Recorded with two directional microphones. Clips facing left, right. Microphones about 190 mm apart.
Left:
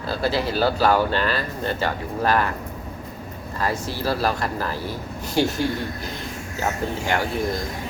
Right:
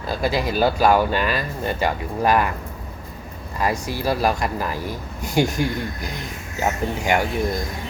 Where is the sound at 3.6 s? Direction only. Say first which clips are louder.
Right 2 dB; 15° right (ahead or behind).